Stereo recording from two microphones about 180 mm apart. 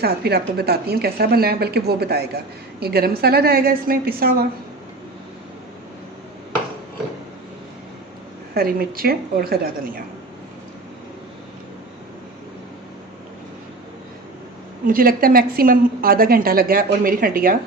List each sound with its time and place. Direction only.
0.0 s speech: 65° right (ahead or behind)
8.5 s speech: 55° right (ahead or behind)
14.8 s a woman's voice: 55° right (ahead or behind)